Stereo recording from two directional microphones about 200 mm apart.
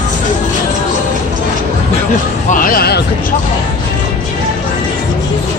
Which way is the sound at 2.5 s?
45° left (ahead or behind).